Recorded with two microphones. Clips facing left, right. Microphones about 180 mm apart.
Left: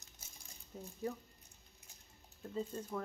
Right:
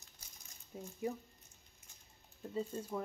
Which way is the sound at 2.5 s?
10° right (ahead or behind).